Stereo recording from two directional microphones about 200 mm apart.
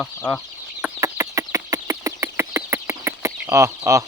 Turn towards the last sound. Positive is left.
turn(degrees=-15)  # may be behind; listen again after turning